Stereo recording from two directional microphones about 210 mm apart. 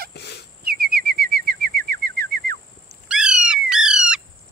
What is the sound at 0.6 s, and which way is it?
Bird, 45° right (ahead or behind).